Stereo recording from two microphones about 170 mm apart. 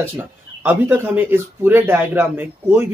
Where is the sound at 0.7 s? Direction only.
10° right (ahead or behind).